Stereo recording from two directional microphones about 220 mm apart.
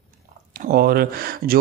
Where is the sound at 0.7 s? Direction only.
40° right (ahead or behind).